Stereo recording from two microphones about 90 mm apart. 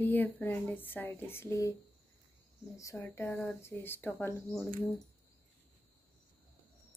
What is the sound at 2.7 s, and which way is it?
A woman's voice, 35° left (ahead or behind).